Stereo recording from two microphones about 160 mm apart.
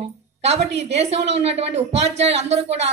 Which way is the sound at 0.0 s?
40° right (ahead or behind).